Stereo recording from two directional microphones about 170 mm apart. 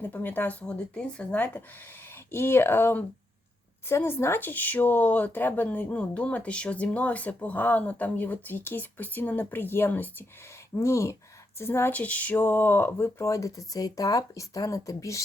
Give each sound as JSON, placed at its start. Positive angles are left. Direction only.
{"t": 0.0, "sound": "speech", "side_deg": 10}